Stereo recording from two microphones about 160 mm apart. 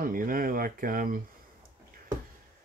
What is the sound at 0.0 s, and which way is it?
Speech, 60° right (ahead or behind).